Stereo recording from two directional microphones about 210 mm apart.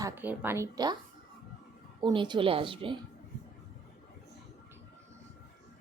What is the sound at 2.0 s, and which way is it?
Speech, 20° right (ahead or behind).